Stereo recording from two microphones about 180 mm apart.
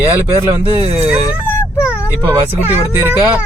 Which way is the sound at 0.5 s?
35° right (ahead or behind).